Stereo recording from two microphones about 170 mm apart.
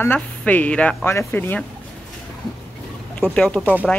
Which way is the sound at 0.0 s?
10° left (ahead or behind).